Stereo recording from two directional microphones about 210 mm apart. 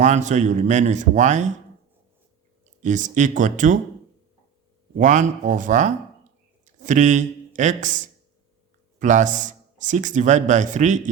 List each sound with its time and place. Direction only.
0.0 s speech: 35° right (ahead or behind)
2.8 s speech: 35° right (ahead or behind)
4.9 s speech: 35° right (ahead or behind)
9.0 s speech: 35° right (ahead or behind)